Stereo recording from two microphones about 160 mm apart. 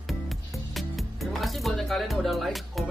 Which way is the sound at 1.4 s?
Centre (ahead or behind).